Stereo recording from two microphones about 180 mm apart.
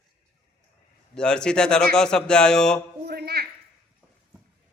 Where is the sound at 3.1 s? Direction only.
60° right (ahead or behind).